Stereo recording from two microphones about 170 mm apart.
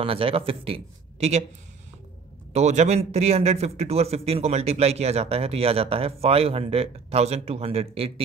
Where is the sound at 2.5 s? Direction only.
40° right (ahead or behind).